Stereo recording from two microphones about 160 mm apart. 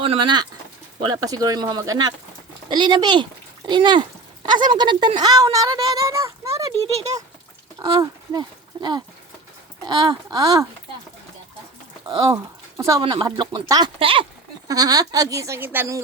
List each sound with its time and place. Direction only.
0.0 s speech: 35° right (ahead or behind); by 6.7 s 20° right (ahead or behind)
7.8 s speech: 30° right (ahead or behind)
12.3 s speech: 20° right (ahead or behind)
13.0 s speech: 30° right (ahead or behind)
14.7 s speech: 25° right (ahead or behind)